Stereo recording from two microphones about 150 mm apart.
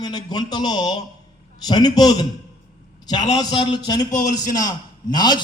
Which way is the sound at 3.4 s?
30° left (ahead or behind).